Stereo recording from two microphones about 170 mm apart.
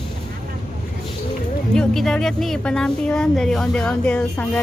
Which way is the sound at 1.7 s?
5° left (ahead or behind).